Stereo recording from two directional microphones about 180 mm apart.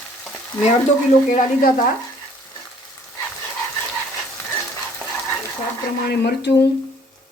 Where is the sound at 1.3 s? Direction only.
50° left (ahead or behind).